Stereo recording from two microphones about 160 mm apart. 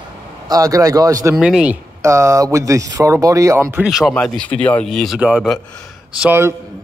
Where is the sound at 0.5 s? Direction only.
20° right (ahead or behind).